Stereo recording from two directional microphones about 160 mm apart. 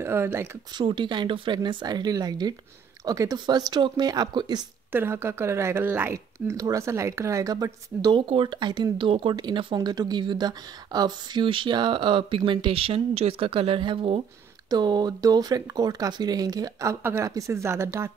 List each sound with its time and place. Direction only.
0.0 s speech: 15° right (ahead or behind)
0.7 s speech: 30° right (ahead or behind)
4.9 s speech: 15° right (ahead or behind)